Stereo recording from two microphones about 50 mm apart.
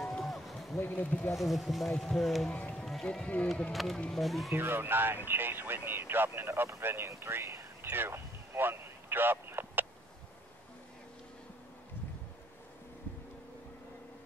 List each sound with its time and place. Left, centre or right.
0.0 s a sound: centre
0.7 s speech: left
1.0 s speech: left
1.3 s speech: centre
2.7 s music: centre
3.7 s speech: centre
4.6 s speech: right
7.1 s speech: right
7.8 s a sound: right